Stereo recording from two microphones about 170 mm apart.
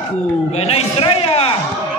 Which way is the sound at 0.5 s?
40° left (ahead or behind).